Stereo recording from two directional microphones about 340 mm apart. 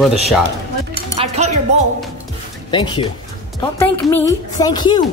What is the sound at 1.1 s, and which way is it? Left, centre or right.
Speech, centre.